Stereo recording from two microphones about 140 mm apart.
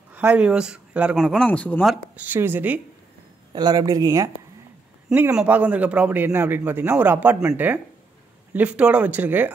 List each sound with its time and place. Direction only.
0.1 s a man's voice: 10° right (ahead or behind); by 1.9 s 10° left (ahead or behind)
2.1 s a man's voice: 15° right (ahead or behind)
3.5 s speech: 30° right (ahead or behind)
5.1 s a man's voice: 10° right (ahead or behind)